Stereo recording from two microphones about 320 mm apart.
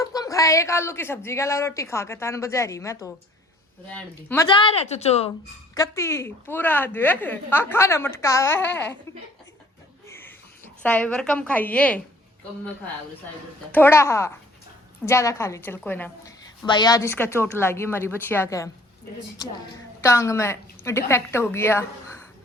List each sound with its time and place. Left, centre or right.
0.0 s a woman's voice: centre
10.1 s a sound: centre
10.8 s a woman's voice: centre
13.7 s a woman's voice: centre
20.0 s a woman's voice: centre